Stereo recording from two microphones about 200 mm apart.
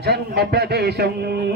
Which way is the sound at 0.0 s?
55° right (ahead or behind).